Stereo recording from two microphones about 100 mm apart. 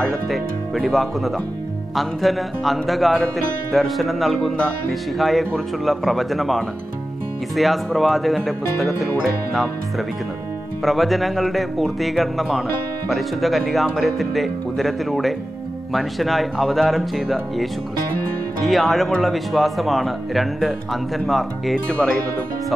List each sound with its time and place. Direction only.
0.0 s speech: centre (ahead or behind)
18.7 s speech: centre (ahead or behind)